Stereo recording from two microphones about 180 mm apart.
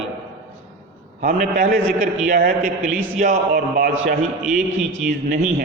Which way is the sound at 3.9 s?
90° right.